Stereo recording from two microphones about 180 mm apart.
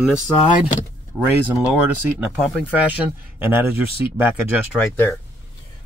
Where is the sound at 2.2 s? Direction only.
Centre (ahead or behind).